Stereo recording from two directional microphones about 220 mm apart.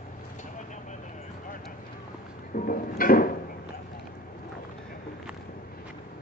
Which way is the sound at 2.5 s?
40° left (ahead or behind).